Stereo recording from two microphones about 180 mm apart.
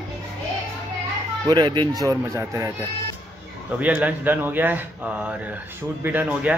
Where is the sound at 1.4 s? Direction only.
25° right (ahead or behind).